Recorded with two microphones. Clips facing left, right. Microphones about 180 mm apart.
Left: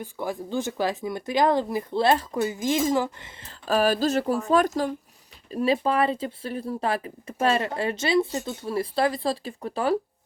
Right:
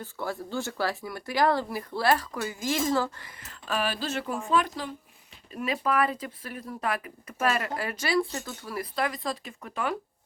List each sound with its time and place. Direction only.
0.0 s speech: 15° left (ahead or behind); by 4.9 s 45° left (ahead or behind)
5.5 s speech: 30° left (ahead or behind)